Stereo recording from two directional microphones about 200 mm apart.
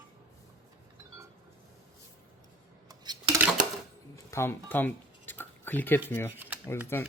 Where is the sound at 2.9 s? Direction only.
20° right (ahead or behind).